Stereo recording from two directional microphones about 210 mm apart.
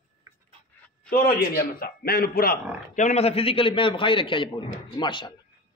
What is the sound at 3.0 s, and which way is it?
A man's voice, 30° left (ahead or behind).